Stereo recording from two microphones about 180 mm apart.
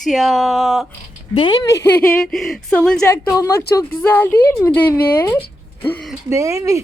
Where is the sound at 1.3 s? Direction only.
30° left (ahead or behind).